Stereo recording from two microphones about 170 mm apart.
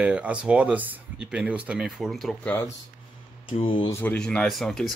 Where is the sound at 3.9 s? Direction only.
10° left (ahead or behind).